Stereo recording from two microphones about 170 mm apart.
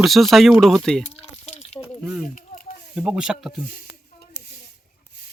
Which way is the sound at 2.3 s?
55° left (ahead or behind).